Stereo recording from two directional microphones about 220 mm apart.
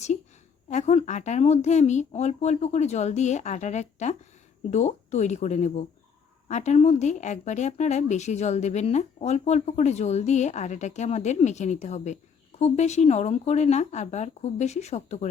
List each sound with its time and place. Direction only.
0.7 s speech: 30° left (ahead or behind)